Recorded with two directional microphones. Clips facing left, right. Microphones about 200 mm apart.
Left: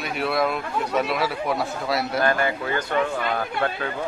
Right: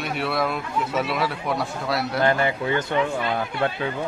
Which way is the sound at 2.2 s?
20° right (ahead or behind).